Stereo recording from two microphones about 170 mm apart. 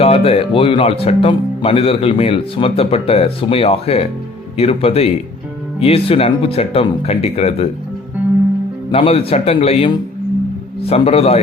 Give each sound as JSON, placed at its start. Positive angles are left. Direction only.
{"t": 0.0, "sound": "speech", "side_deg": 35}
{"t": 8.9, "sound": "a man's voice", "side_deg": 35}